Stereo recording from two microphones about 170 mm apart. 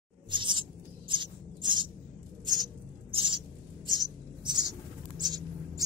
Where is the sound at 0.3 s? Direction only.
30° right (ahead or behind).